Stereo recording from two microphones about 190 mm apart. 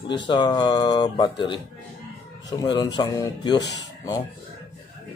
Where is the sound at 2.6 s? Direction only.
20° left (ahead or behind).